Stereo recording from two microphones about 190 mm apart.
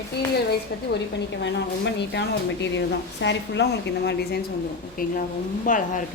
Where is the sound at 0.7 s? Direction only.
60° left (ahead or behind).